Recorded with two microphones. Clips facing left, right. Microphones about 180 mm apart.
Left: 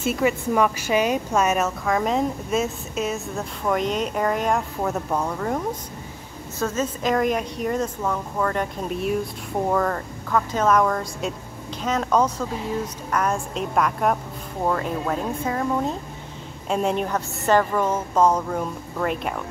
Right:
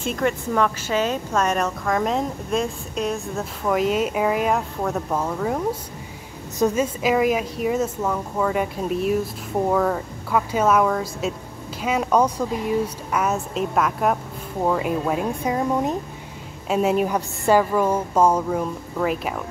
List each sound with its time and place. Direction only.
0.0 s a woman's voice: 5° left (ahead or behind); by 16.0 s 15° right (ahead or behind)
16.6 s a woman's voice: 5° right (ahead or behind)